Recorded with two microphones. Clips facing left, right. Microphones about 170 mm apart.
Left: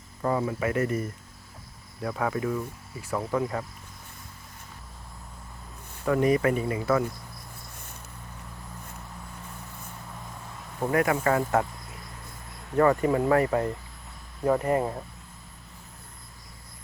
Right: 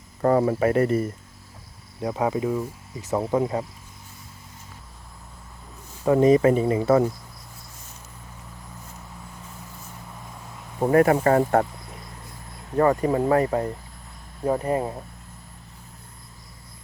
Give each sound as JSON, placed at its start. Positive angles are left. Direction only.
{"t": 0.2, "sound": "speech", "side_deg": -50}
{"t": 0.6, "sound": "speech", "side_deg": -35}
{"t": 2.0, "sound": "speech", "side_deg": -20}
{"t": 6.1, "sound": "speech", "side_deg": -25}
{"t": 10.8, "sound": "speech", "side_deg": -30}
{"t": 12.7, "sound": "speech", "side_deg": -25}